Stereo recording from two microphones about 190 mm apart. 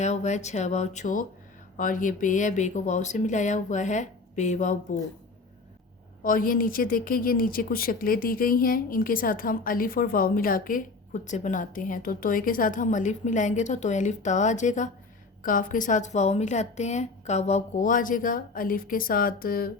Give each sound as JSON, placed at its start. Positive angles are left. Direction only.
{"t": 0.0, "sound": "speech", "side_deg": 35}
{"t": 6.2, "sound": "speech", "side_deg": 45}